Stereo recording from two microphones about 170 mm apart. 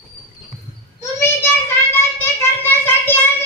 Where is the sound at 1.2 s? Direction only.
15° left (ahead or behind).